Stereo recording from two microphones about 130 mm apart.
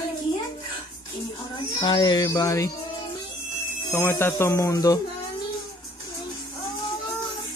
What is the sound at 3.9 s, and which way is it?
Speech, 20° left (ahead or behind).